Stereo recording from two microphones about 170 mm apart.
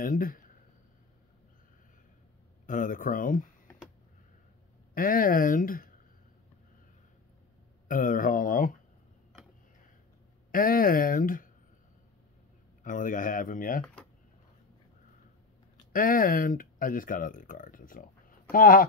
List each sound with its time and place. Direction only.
0.0 s speech: 55° left (ahead or behind)
2.6 s speech: 50° left (ahead or behind)
4.9 s speech: 55° left (ahead or behind)
7.9 s speech: 55° left (ahead or behind)
10.5 s speech: 55° left (ahead or behind)
12.8 s speech: 50° left (ahead or behind)
15.9 s speech: 55° left (ahead or behind)